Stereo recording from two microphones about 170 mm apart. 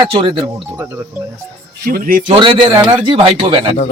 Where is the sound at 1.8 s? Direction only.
60° right (ahead or behind).